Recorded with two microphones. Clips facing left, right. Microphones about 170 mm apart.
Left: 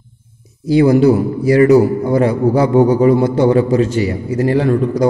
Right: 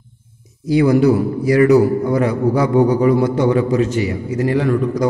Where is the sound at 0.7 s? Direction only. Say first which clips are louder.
Left 3 dB; 30° left (ahead or behind).